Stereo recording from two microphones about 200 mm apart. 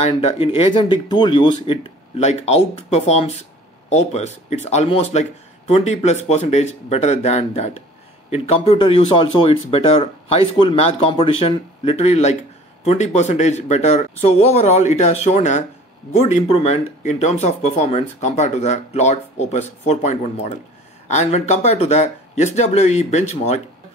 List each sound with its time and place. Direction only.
0.0 s speech: 30° left (ahead or behind)